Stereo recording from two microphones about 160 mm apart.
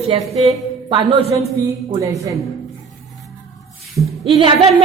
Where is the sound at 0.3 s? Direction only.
40° right (ahead or behind).